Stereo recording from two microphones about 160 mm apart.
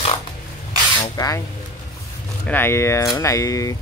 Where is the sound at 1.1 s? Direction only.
20° left (ahead or behind).